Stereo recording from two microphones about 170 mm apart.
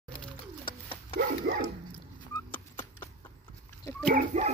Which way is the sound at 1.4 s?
55° right (ahead or behind).